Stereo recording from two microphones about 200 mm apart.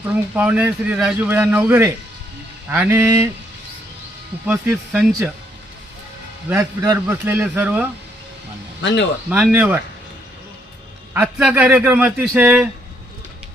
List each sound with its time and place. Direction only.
0.0 s speech: 10° right (ahead or behind)
4.4 s speech: 10° right (ahead or behind)
6.5 s speech: 15° right (ahead or behind)
8.8 s speech: 60° left (ahead or behind)
9.3 s speech: 10° right (ahead or behind)
11.1 s speech: 10° right (ahead or behind)